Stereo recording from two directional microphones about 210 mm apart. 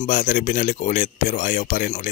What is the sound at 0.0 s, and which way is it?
Speech, 40° left (ahead or behind).